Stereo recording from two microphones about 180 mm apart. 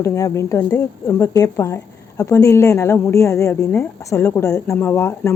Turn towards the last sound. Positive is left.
turn(degrees=15)  # may be behind; listen again after turning